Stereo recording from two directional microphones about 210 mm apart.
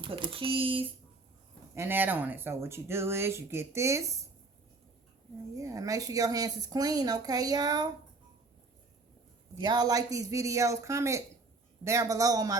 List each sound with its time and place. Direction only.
0.0 s speech: 25° right (ahead or behind)
1.7 s speech: 10° right (ahead or behind)
5.5 s speech: 15° right (ahead or behind)
9.6 s speech: 20° right (ahead or behind)